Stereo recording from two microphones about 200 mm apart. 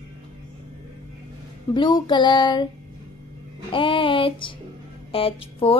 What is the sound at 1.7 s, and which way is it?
Child singing, 25° left (ahead or behind).